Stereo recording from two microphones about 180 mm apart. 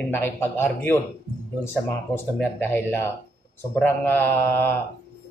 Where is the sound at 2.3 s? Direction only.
10° left (ahead or behind).